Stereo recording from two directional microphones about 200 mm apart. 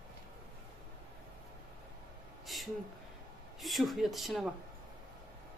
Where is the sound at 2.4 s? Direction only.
Centre (ahead or behind).